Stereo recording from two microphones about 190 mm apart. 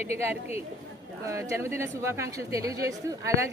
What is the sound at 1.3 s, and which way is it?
Speech, 15° right (ahead or behind).